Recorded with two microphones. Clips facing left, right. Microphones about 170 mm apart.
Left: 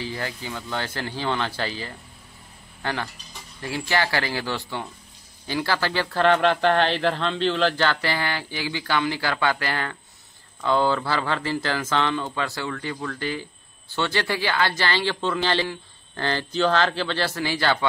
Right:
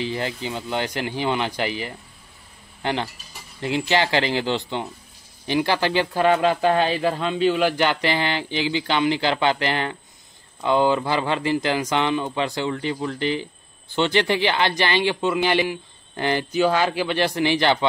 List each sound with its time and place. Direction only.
0.0 s speech: 20° right (ahead or behind)